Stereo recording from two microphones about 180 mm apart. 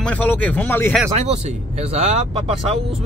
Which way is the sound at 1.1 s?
35° right (ahead or behind).